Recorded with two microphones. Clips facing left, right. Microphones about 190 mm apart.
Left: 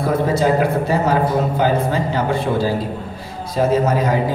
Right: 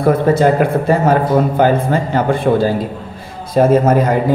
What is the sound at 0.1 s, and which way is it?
A man's voice, 55° right (ahead or behind).